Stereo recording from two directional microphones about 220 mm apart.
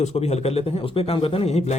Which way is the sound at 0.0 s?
30° left (ahead or behind).